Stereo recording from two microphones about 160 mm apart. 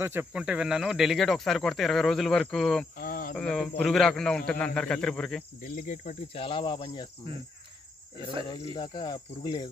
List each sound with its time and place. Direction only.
0.0 s speech: 15° right (ahead or behind); by 2.9 s 5° left (ahead or behind)
3.0 s cricket: 65° left (ahead or behind)
3.3 s speech: 5° left (ahead or behind)
5.6 s speech: 55° left (ahead or behind)
6.3 s speech: 35° left (ahead or behind)
8.7 s speech: 25° left (ahead or behind)